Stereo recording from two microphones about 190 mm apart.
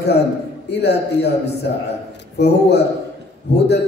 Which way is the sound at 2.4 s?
60° left (ahead or behind).